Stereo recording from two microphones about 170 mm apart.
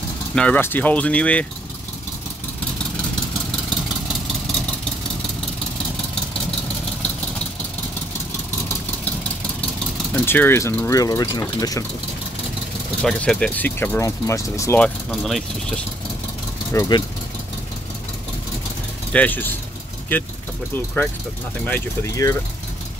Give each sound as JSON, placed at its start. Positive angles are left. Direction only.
{"t": 0.3, "sound": "speech", "side_deg": 5}
{"t": 10.1, "sound": "speech", "side_deg": 10}
{"t": 13.0, "sound": "speech", "side_deg": 5}
{"t": 14.8, "sound": "speech", "side_deg": 0}
{"t": 16.7, "sound": "speech", "side_deg": 20}
{"t": 19.1, "sound": "speech", "side_deg": 10}